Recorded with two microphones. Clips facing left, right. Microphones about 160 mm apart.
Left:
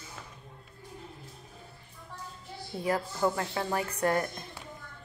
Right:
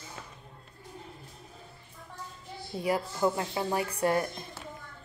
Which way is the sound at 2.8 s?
15° right (ahead or behind).